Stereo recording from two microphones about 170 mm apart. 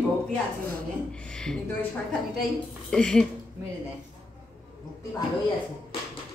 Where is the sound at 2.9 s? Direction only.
5° left (ahead or behind).